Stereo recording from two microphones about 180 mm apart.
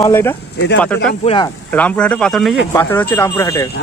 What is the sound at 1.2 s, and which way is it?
Speech, 30° left (ahead or behind).